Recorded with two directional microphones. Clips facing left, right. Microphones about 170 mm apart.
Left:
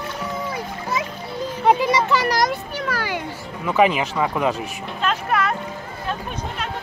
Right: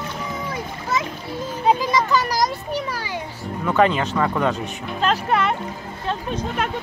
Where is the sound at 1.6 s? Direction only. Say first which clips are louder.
Left 2 dB; 65° left (ahead or behind).